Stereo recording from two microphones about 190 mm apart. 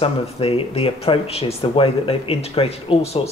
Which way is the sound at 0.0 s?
30° left (ahead or behind).